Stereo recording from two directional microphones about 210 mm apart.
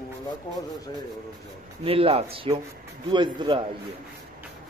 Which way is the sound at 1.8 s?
25° right (ahead or behind).